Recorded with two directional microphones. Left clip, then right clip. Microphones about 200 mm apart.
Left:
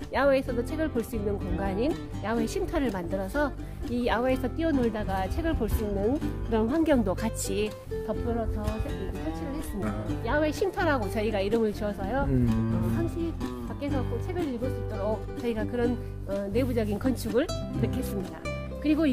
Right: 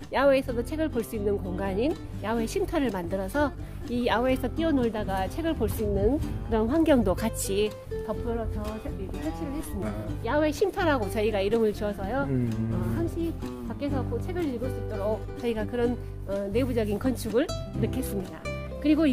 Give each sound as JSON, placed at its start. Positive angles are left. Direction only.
{"t": 0.1, "sound": "speech", "side_deg": -25}
{"t": 10.2, "sound": "speech", "side_deg": -30}
{"t": 13.9, "sound": "speech", "side_deg": -35}